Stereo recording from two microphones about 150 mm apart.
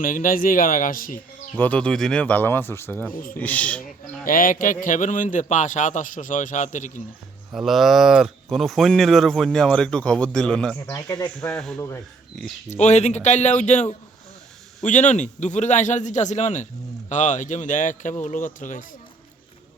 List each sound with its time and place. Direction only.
0.0 s speech: 65° left (ahead or behind)
1.5 s speech: 10° left (ahead or behind)
4.3 s a man's voice: 65° left (ahead or behind)
7.5 s speech: centre (ahead or behind)
10.8 s speech: 20° left (ahead or behind)
11.3 s speech: 5° left (ahead or behind)
11.8 s speech: 15° left (ahead or behind)
12.6 s a man's voice: 50° left (ahead or behind)